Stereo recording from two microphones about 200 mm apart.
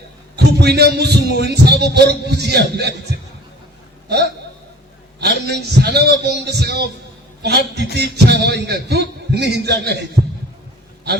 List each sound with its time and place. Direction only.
0.3 s a man's voice: 55° right (ahead or behind)
5.2 s a man's voice: 55° right (ahead or behind)